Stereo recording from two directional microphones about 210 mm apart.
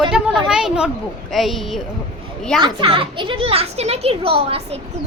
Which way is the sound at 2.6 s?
25° right (ahead or behind).